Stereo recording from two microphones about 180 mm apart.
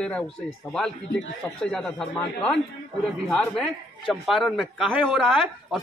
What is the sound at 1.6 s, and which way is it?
A man's voice, 5° left (ahead or behind).